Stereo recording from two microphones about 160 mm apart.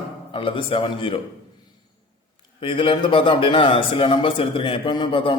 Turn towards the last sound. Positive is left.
turn(degrees=35)  # may be behind; listen again after turning